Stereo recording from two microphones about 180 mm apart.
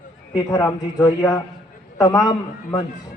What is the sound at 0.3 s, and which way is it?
A man's voice, 20° left (ahead or behind).